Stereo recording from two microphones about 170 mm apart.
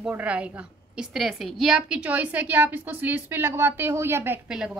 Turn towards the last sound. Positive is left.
turn(degrees=-10)  # may be behind; listen again after turning